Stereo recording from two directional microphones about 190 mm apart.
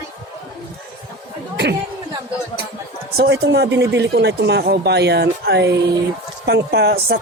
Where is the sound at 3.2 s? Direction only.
65° right (ahead or behind).